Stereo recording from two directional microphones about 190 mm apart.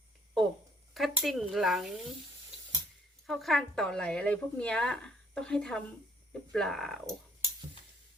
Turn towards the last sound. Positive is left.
turn(degrees=0)  # may be behind; listen again after turning